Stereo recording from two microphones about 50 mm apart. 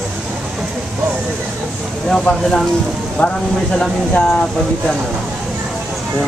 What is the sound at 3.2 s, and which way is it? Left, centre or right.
Speech, left.